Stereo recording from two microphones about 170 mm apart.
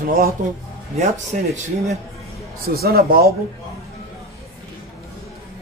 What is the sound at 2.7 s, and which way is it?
Speech, 65° right (ahead or behind).